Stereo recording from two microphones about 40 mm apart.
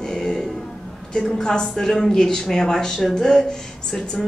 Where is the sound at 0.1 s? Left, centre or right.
Centre.